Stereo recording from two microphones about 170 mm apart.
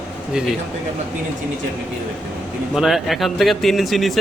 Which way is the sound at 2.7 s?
Centre (ahead or behind).